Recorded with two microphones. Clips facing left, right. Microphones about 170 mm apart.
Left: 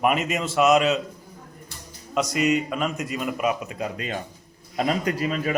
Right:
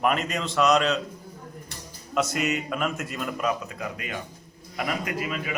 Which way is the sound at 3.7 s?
25° left (ahead or behind).